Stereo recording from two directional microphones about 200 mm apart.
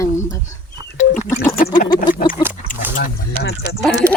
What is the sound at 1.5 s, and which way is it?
Gargling, 45° left (ahead or behind).